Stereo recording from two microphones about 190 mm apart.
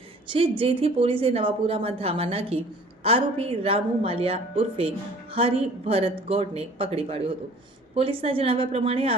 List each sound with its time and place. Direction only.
0.3 s a woman's voice: 25° right (ahead or behind)